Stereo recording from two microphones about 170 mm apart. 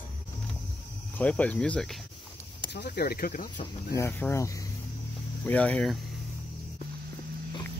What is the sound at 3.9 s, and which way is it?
Speech, 15° left (ahead or behind).